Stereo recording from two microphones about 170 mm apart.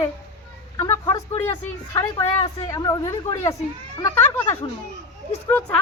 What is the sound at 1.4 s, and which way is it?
Speech, 20° left (ahead or behind).